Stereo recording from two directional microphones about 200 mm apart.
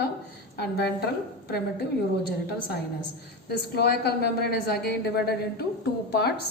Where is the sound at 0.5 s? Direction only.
55° left (ahead or behind).